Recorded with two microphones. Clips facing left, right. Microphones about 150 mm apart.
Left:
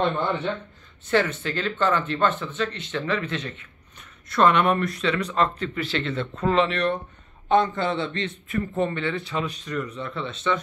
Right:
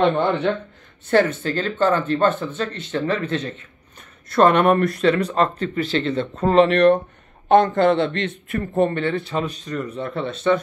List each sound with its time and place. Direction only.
0.0 s a man's voice: 75° right (ahead or behind)
1.4 s speech: 40° right (ahead or behind)
7.6 s a man's voice: 60° right (ahead or behind)
8.5 s speech: 50° right (ahead or behind)